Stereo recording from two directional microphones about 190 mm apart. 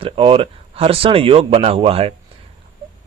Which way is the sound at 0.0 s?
30° right (ahead or behind).